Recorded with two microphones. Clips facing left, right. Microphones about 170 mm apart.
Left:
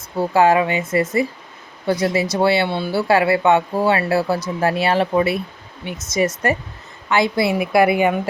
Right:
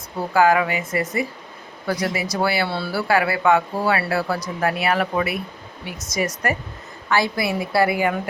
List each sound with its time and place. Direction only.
0.2 s speech: 25° left (ahead or behind)